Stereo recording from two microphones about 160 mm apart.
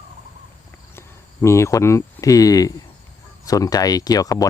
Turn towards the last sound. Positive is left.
turn(degrees=20)  # may be behind; listen again after turning